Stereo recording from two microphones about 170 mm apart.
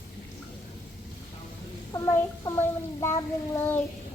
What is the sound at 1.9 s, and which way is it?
Speech, 20° left (ahead or behind).